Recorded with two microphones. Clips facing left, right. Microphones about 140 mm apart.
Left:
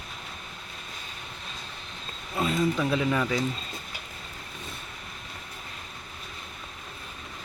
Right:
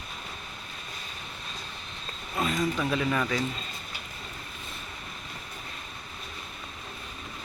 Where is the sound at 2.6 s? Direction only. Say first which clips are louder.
Left 4 dB; 5° left (ahead or behind).